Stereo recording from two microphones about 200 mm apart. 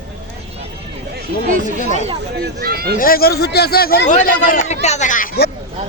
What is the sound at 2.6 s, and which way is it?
Speech, 50° right (ahead or behind).